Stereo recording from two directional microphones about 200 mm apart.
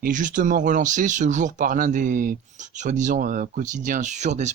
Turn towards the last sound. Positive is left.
turn(degrees=-35)  # may be behind; listen again after turning